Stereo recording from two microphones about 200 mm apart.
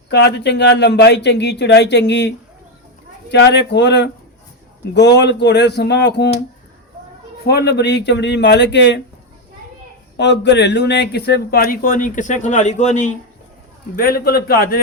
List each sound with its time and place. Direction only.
0.1 s speech: 60° left (ahead or behind)
7.4 s speech: 55° left (ahead or behind)
10.2 s a man's voice: 60° left (ahead or behind); by 13.1 s 35° left (ahead or behind)
13.9 s a man's voice: 45° left (ahead or behind)